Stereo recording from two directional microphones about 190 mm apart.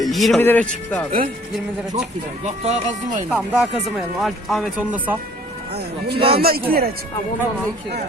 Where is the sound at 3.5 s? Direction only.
5° right (ahead or behind).